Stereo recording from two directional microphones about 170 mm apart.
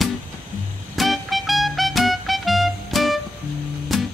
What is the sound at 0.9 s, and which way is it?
Music, centre (ahead or behind).